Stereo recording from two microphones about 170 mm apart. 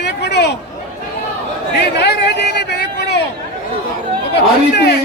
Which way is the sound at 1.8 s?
75° left (ahead or behind).